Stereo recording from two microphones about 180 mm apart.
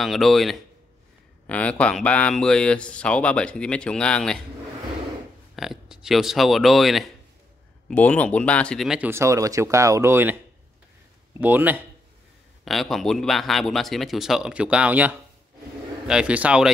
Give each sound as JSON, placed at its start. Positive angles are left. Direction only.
{"t": 0.0, "sound": "speech", "side_deg": 0}
{"t": 5.6, "sound": "speech", "side_deg": 0}
{"t": 12.6, "sound": "speech", "side_deg": 0}